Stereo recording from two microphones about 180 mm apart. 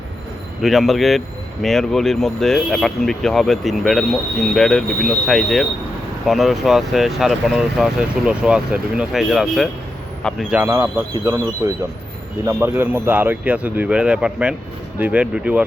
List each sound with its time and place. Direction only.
0.6 s speech: centre (ahead or behind)
10.6 s speech: 15° right (ahead or behind)